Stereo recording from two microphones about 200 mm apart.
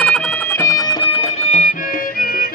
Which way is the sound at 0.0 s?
5° left (ahead or behind).